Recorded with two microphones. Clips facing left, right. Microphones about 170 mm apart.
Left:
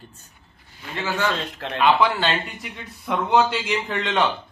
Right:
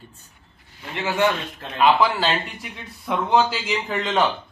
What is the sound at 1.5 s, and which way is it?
Speech, 85° left.